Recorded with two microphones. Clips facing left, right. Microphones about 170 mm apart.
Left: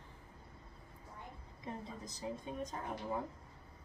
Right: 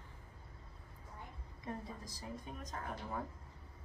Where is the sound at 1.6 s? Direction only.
20° left (ahead or behind).